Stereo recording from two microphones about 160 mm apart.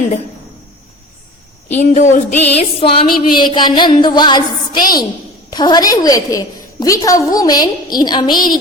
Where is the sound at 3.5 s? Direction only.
30° left (ahead or behind).